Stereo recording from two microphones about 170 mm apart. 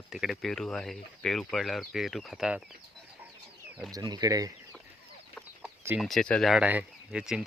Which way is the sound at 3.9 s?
25° right (ahead or behind).